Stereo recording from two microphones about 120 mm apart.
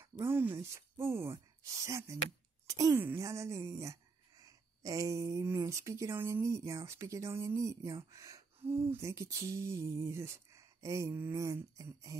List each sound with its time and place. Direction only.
0.2 s a woman's voice: 20° right (ahead or behind)